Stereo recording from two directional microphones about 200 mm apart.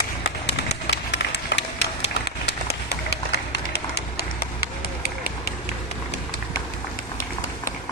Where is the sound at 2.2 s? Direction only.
55° left (ahead or behind).